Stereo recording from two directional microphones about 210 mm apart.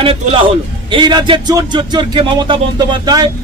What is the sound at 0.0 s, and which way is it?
A man's voice, 25° right (ahead or behind).